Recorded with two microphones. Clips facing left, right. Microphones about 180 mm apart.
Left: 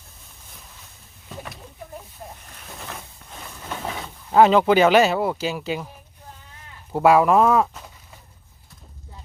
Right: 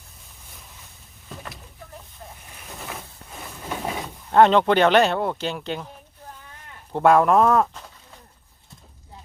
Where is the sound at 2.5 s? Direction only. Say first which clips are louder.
Right 5 dB; 5° right (ahead or behind).